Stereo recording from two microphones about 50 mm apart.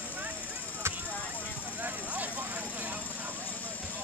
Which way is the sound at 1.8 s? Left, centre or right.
Right.